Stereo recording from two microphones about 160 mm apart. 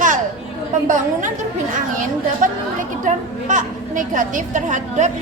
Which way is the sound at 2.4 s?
55° right (ahead or behind).